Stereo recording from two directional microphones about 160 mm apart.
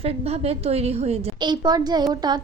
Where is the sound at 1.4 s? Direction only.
25° right (ahead or behind).